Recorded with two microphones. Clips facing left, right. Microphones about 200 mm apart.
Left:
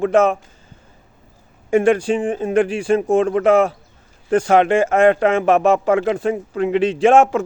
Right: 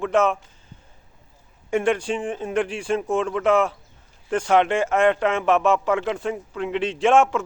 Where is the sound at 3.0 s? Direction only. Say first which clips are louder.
Left 5 dB; 45° left (ahead or behind).